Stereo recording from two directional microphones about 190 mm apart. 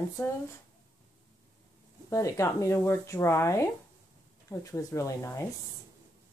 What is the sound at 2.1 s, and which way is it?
Speech, 15° left (ahead or behind).